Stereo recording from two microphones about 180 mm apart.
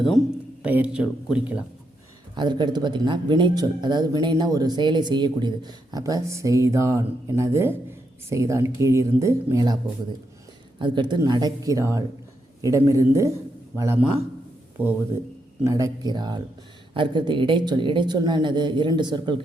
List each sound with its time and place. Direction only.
0.6 s speech: 5° right (ahead or behind)
2.3 s speech: 25° right (ahead or behind)
10.8 s speech: 25° right (ahead or behind)
15.6 s speech: 20° right (ahead or behind)